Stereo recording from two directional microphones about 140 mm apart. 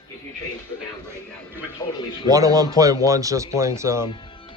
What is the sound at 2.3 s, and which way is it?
A man's voice, 25° right (ahead or behind).